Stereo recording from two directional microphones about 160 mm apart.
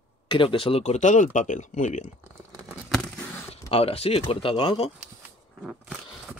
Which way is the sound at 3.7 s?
40° left (ahead or behind).